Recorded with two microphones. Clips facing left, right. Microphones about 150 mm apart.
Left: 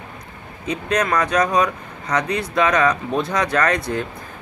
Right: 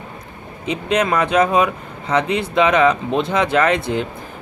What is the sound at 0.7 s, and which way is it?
Speech, 25° right (ahead or behind).